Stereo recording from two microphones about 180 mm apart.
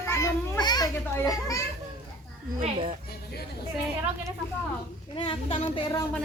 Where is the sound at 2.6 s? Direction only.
30° right (ahead or behind).